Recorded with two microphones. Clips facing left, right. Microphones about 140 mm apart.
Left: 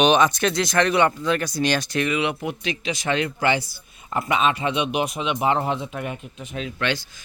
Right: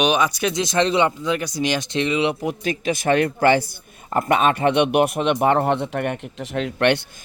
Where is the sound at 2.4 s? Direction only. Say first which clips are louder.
Right 4 dB; 45° right (ahead or behind); by 7.0 s 65° right (ahead or behind).